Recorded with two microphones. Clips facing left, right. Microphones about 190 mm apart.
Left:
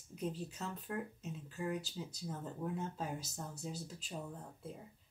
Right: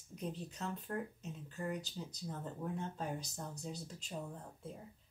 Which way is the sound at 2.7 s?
5° left (ahead or behind).